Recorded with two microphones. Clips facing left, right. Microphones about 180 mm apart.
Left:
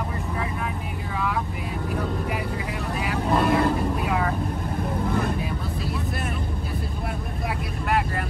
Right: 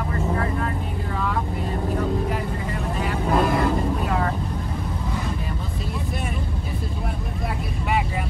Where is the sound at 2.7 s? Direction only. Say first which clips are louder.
Right 2 dB; 5° left (ahead or behind).